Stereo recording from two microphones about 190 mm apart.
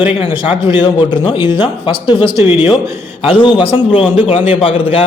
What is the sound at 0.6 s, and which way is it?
A man's voice, 25° left (ahead or behind).